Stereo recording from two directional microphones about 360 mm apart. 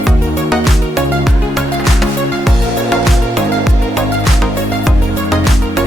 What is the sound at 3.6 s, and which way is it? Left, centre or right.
Music, centre.